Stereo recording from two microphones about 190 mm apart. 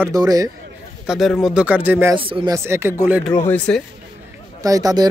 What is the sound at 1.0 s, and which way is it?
Speech, centre (ahead or behind).